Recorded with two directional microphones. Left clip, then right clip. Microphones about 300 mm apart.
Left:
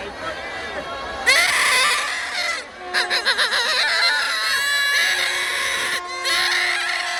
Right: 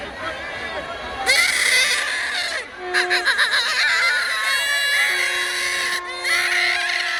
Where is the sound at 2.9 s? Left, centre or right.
Left.